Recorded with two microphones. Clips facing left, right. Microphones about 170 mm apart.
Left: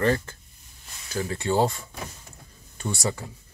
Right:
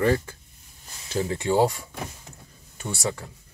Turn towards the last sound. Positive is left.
turn(degrees=5)  # may be behind; listen again after turning